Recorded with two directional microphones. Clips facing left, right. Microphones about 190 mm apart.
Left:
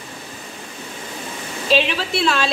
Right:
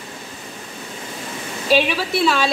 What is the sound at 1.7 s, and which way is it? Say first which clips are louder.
Speech: right 1 dB; 10° right (ahead or behind).